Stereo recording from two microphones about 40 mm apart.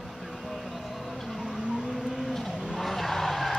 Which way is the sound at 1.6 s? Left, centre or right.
Centre.